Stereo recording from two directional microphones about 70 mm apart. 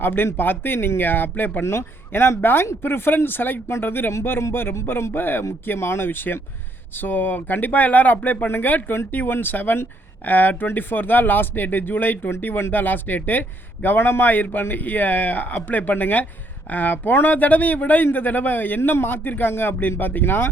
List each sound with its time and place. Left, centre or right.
0.0 s speech: left